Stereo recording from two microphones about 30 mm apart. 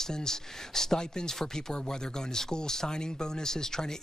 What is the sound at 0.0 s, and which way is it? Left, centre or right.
Speech, centre.